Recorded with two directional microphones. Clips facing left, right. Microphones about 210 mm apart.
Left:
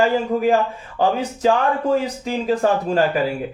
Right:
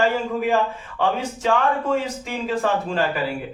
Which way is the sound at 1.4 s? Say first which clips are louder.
Left 3 dB; 40° left (ahead or behind).